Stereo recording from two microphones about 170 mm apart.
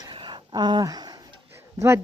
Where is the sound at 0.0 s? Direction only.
30° right (ahead or behind).